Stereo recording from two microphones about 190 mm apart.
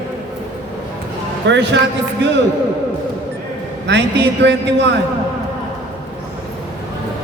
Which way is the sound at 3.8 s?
65° right (ahead or behind).